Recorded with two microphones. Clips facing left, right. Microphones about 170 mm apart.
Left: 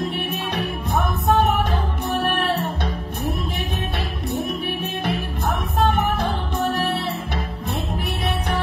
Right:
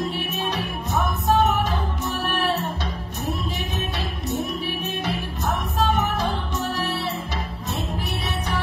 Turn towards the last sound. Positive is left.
turn(degrees=55)  # may be behind; listen again after turning